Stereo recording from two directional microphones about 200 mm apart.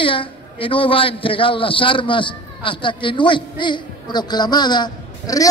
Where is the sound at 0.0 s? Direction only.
25° left (ahead or behind).